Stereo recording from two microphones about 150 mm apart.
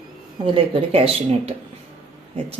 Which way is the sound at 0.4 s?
40° right (ahead or behind).